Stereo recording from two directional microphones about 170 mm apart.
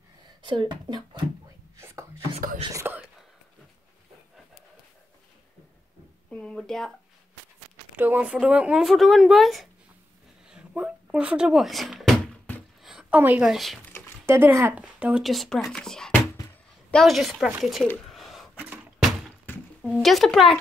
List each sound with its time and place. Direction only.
0.4 s speech: 30° right (ahead or behind)
2.7 s speech: 15° right (ahead or behind)
6.3 s speech: 5° left (ahead or behind)
7.9 s speech: 10° right (ahead or behind)
10.5 s a sound: 5° right (ahead or behind)
12.8 s a sound: 5° right (ahead or behind)
14.2 s speech: 15° right (ahead or behind)
18.1 s a sound: centre (ahead or behind)
19.8 s speech: centre (ahead or behind)